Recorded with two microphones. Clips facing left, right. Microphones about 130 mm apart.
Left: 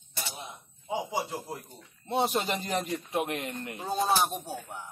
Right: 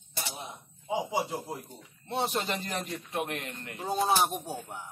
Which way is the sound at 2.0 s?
10° left (ahead or behind).